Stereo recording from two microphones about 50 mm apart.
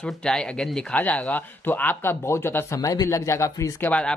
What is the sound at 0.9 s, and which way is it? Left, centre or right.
Speech, left.